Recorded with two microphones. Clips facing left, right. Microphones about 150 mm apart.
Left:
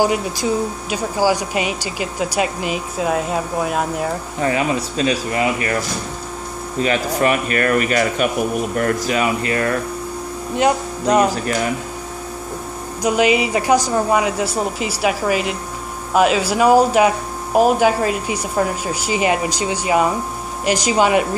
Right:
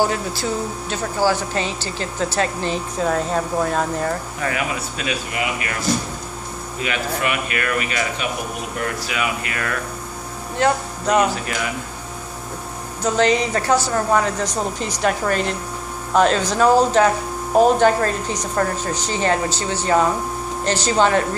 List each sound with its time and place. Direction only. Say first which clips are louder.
0.0 s speech: left 3 dB; 15° left (ahead or behind)
4.4 s speech: left 5 dB; 30° left (ahead or behind)
6.8 s speech: left 6 dB; 35° left (ahead or behind)
10.6 s speech: left 2 dB; 10° left (ahead or behind)
13.0 s speech: left 2 dB; 10° left (ahead or behind)